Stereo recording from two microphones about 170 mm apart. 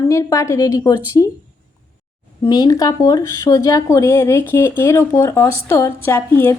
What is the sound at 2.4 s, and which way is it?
Speech, 20° left (ahead or behind).